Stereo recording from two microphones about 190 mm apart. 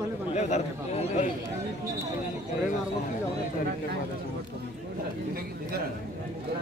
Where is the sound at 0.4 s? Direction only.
35° left (ahead or behind).